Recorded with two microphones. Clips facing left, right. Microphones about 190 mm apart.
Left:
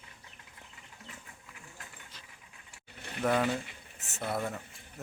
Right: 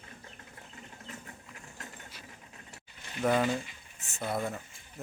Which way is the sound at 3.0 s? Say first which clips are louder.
Left 1 dB; 60° left (ahead or behind).